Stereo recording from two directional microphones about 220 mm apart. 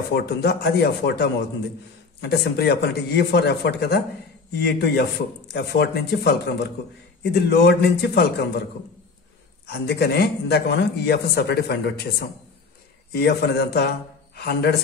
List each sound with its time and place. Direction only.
0.1 s a man's voice: 50° left (ahead or behind)
9.7 s a man's voice: 50° left (ahead or behind)